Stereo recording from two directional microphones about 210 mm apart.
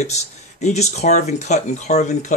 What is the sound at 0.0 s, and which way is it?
Speech, 35° left (ahead or behind).